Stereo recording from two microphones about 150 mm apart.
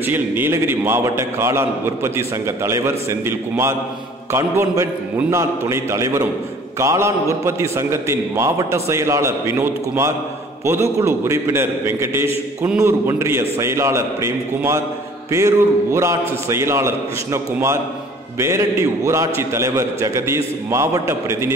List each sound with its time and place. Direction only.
0.0 s a man's voice: 15° right (ahead or behind)